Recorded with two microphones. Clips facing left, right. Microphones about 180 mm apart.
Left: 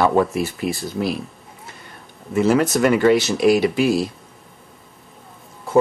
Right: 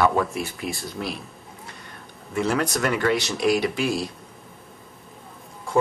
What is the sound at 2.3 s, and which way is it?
Speech, 5° left (ahead or behind).